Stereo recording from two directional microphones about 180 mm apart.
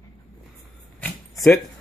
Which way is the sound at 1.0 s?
5° left (ahead or behind).